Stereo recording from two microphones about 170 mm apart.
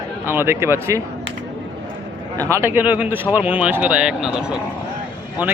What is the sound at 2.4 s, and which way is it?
Speech, 15° right (ahead or behind).